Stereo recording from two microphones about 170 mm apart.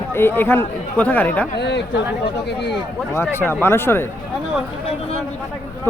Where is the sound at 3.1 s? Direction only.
15° left (ahead or behind).